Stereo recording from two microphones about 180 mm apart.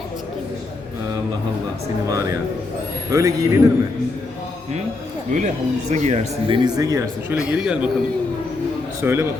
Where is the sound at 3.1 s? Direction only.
15° right (ahead or behind).